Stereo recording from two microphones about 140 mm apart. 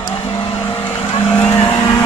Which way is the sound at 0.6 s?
15° left (ahead or behind).